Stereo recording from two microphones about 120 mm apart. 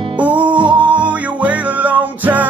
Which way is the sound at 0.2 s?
10° right (ahead or behind).